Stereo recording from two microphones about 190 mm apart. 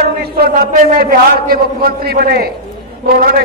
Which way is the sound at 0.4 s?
50° right (ahead or behind).